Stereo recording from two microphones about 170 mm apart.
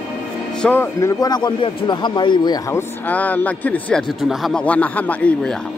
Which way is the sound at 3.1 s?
10° left (ahead or behind).